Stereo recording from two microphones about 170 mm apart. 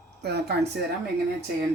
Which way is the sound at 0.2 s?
75° right (ahead or behind).